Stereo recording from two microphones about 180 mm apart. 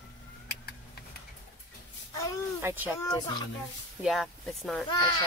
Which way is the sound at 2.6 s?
10° right (ahead or behind).